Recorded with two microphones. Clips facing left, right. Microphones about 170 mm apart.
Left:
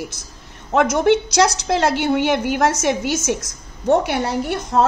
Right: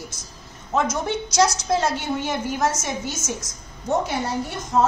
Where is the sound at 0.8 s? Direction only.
70° left (ahead or behind).